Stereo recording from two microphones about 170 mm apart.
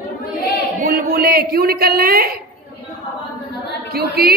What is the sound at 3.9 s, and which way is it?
Speech, 65° right (ahead or behind).